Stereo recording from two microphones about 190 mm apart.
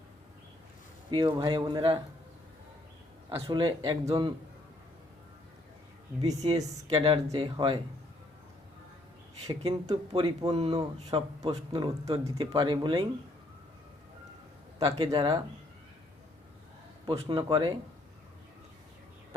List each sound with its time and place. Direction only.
1.1 s a man's voice: 20° right (ahead or behind)
3.4 s a man's voice: 25° right (ahead or behind)
6.2 s a man's voice: 35° right (ahead or behind)
9.6 s a man's voice: 30° right (ahead or behind)
14.8 s a man's voice: 25° right (ahead or behind)
17.1 s a man's voice: 25° right (ahead or behind)